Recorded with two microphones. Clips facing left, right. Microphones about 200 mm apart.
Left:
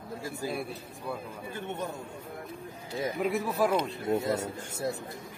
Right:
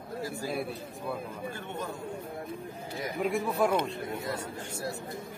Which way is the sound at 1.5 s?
20° left (ahead or behind).